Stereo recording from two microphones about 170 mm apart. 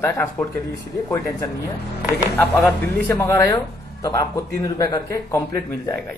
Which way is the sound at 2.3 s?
10° left (ahead or behind).